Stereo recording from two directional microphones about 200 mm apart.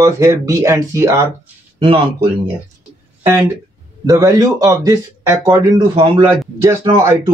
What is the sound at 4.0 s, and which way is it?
Speech, 20° right (ahead or behind).